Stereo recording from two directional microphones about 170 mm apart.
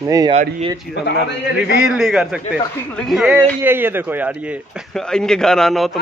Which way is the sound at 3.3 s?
10° right (ahead or behind).